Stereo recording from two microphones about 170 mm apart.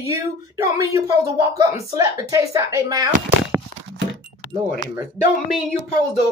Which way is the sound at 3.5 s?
15° right (ahead or behind).